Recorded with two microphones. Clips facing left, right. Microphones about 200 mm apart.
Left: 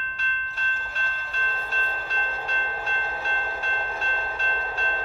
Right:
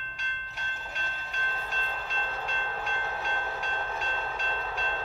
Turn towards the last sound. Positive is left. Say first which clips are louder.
# left 2 dB
turn(degrees=-15)  # may be behind; listen again after turning